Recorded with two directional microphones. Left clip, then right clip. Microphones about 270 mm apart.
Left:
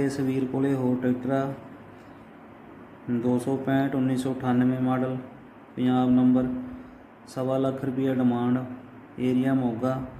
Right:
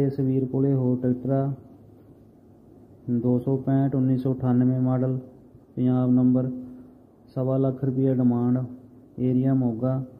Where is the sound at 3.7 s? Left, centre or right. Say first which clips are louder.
Left 1 dB; centre.